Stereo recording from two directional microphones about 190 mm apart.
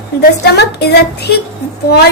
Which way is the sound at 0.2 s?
60° left (ahead or behind).